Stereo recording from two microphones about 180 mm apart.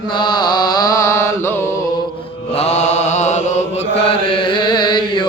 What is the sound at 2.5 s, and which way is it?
Mantra, 35° left (ahead or behind).